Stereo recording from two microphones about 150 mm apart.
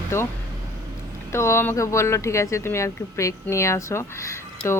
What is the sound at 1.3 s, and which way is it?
Speech, 15° left (ahead or behind).